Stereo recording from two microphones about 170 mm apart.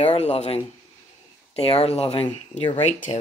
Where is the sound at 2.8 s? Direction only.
45° left (ahead or behind).